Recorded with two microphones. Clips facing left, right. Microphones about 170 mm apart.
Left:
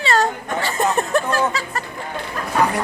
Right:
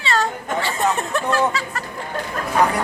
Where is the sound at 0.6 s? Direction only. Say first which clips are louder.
Left 3 dB; 40° left (ahead or behind).